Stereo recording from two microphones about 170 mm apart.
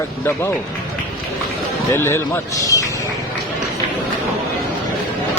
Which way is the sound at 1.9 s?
15° left (ahead or behind).